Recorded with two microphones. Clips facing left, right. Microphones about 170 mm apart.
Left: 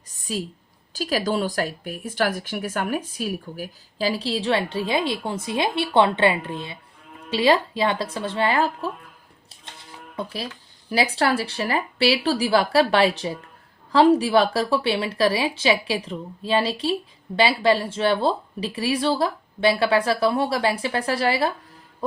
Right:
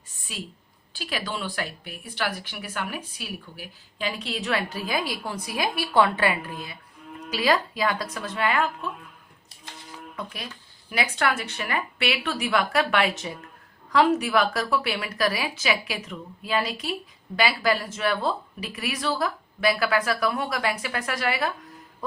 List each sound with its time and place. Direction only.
0.1 s a woman's voice: 40° left (ahead or behind)
10.2 s a woman's voice: 30° left (ahead or behind)